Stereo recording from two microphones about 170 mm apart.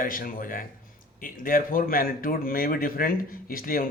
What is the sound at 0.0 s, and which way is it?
A man's voice, 55° left (ahead or behind).